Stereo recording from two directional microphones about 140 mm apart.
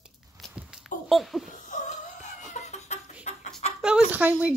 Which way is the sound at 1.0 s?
Centre (ahead or behind).